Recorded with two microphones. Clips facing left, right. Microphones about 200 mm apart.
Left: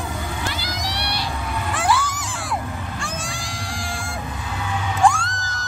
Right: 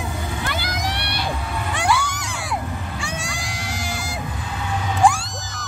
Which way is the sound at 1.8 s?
Centre (ahead or behind).